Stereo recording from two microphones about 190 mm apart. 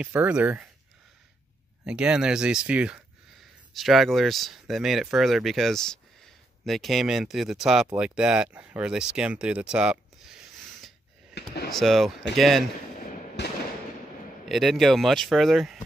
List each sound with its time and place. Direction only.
0.0 s speech: 5° right (ahead or behind)
1.9 s speech: 5° right (ahead or behind)
11.3 s a sound: 60° left (ahead or behind)
11.7 s speech: centre (ahead or behind)
13.4 s fireworks: 65° left (ahead or behind)
14.5 s speech: centre (ahead or behind)